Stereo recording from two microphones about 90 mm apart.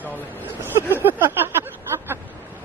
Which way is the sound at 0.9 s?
25° right (ahead or behind).